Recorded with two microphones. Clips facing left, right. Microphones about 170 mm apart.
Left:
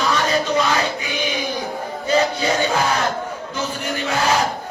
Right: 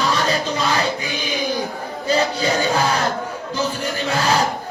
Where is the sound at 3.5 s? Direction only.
35° right (ahead or behind).